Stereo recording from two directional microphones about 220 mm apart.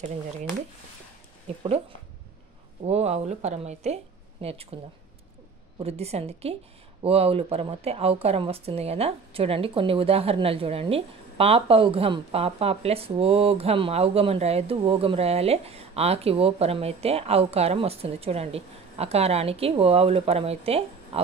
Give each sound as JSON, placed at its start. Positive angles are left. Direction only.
{"t": 2.8, "sound": "speech", "side_deg": -30}
{"t": 5.8, "sound": "speech", "side_deg": -30}